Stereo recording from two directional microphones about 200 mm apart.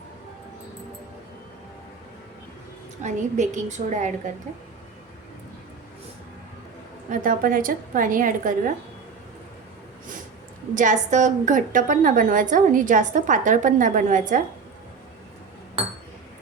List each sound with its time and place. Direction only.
3.0 s a woman's voice: 35° right (ahead or behind)
7.1 s a woman's voice: 45° right (ahead or behind)
10.8 s a woman's voice: 40° right (ahead or behind)